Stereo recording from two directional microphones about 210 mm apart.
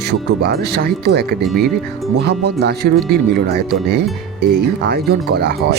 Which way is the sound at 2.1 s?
50° right (ahead or behind).